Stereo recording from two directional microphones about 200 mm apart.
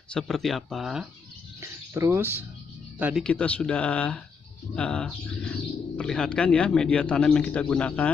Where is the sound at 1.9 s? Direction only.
10° right (ahead or behind).